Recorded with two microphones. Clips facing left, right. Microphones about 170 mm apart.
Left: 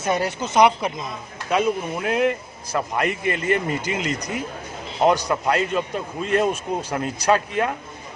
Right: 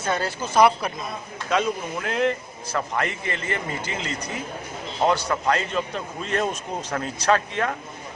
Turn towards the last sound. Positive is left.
turn(degrees=10)  # may be behind; listen again after turning